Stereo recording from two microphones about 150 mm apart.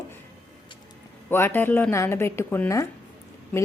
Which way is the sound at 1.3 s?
15° left (ahead or behind).